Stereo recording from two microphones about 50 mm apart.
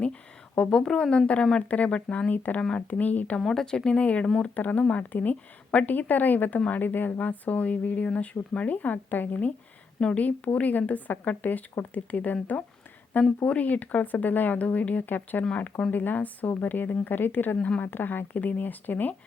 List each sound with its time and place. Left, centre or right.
0.0 s speech: left
3.4 s speech: centre; by 9.5 s left
10.0 s speech: left
10.2 s speech: left